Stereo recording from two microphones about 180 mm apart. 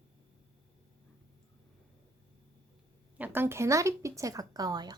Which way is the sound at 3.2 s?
10° right (ahead or behind).